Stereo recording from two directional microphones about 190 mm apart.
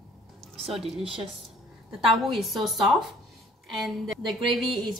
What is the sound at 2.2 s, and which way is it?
Speech, centre (ahead or behind).